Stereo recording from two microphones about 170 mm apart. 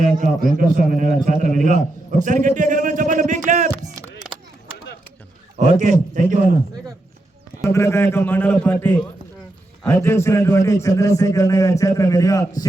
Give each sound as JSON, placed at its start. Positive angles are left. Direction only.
{"t": 0.0, "sound": "a man's voice", "side_deg": -50}
{"t": 5.5, "sound": "a man's voice", "side_deg": -45}
{"t": 7.7, "sound": "a man's voice", "side_deg": 15}